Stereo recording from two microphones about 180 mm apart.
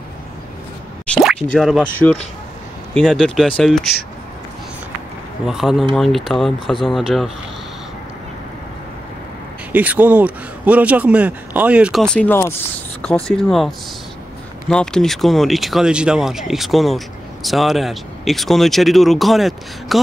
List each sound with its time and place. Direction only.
1.0 s a sound: 5° left (ahead or behind)
2.9 s speech: centre (ahead or behind)
5.5 s speech: centre (ahead or behind)
9.7 s a man's voice: 10° right (ahead or behind)